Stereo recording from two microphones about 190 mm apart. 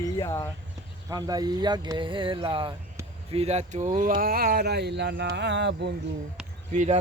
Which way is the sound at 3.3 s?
35° right (ahead or behind).